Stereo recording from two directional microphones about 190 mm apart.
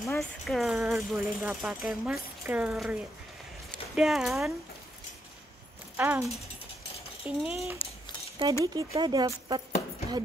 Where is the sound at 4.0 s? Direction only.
Centre (ahead or behind).